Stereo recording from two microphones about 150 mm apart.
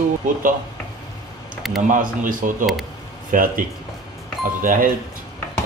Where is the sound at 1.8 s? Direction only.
60° right (ahead or behind).